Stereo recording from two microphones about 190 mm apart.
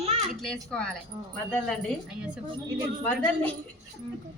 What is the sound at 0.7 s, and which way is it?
A woman's voice, 5° left (ahead or behind).